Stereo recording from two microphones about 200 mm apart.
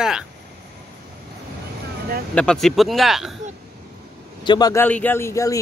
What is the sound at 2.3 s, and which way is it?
Speech, 5° left (ahead or behind).